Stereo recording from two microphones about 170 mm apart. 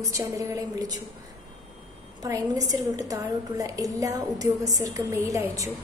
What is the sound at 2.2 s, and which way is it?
A woman's voice, 20° right (ahead or behind).